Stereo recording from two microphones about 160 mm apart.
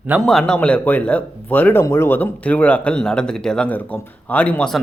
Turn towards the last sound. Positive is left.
turn(degrees=5)  # may be behind; listen again after turning